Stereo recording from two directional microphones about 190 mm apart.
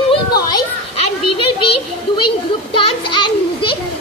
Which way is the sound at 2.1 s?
25° left (ahead or behind).